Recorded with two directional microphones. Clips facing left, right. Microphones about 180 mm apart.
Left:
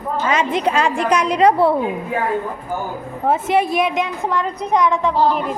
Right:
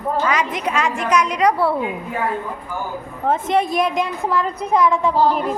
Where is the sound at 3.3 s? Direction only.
5° left (ahead or behind).